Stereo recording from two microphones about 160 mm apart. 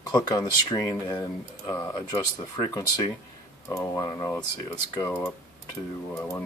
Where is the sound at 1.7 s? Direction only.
25° left (ahead or behind).